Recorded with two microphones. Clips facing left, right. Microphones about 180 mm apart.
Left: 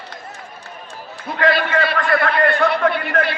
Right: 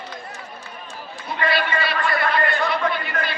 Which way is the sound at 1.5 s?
50° left (ahead or behind).